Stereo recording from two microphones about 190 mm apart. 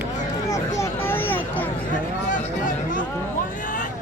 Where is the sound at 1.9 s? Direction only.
45° left (ahead or behind).